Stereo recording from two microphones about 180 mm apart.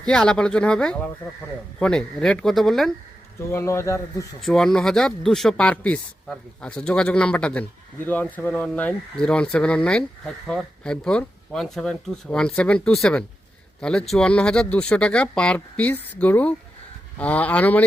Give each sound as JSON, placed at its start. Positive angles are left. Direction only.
{"t": 0.0, "sound": "speech", "side_deg": 5}
{"t": 3.5, "sound": "a man's voice", "side_deg": 15}
{"t": 4.4, "sound": "a man's voice", "side_deg": 0}